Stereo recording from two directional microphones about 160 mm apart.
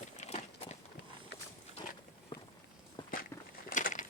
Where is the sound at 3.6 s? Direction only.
55° left (ahead or behind).